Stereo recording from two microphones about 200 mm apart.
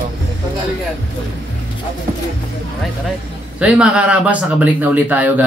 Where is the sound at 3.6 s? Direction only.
5° right (ahead or behind).